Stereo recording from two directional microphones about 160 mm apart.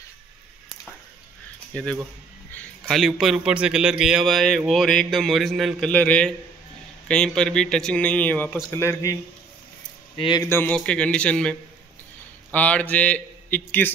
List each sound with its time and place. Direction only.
1.7 s a man's voice: 5° left (ahead or behind)
10.1 s speech: 30° left (ahead or behind)
10.5 s a man's voice: 10° left (ahead or behind)
12.5 s a man's voice: 10° left (ahead or behind)